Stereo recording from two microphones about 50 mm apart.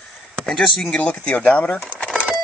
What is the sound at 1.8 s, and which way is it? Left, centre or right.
Cash register, left.